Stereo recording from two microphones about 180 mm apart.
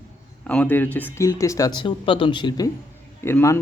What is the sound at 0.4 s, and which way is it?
Speech, 10° left (ahead or behind).